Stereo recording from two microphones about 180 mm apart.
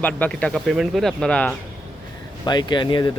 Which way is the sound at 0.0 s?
10° left (ahead or behind).